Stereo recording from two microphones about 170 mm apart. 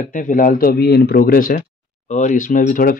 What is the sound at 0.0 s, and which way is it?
Speech, 50° left (ahead or behind).